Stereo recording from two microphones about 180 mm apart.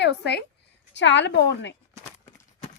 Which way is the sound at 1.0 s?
80° left.